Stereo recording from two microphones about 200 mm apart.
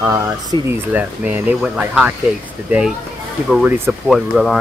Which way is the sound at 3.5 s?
10° right (ahead or behind).